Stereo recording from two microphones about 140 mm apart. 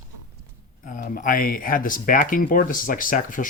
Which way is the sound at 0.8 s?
70° left (ahead or behind).